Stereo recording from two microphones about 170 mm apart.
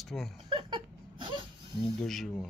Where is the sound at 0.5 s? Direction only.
30° right (ahead or behind).